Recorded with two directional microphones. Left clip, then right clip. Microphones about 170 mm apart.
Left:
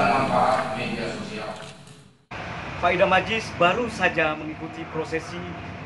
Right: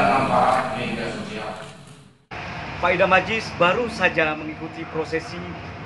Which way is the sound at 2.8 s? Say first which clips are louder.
Right 2 dB; 5° right (ahead or behind).